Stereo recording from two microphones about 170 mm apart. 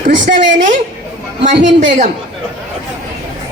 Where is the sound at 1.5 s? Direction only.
45° right (ahead or behind).